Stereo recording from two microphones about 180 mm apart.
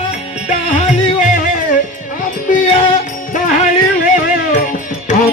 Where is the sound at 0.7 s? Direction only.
45° left (ahead or behind).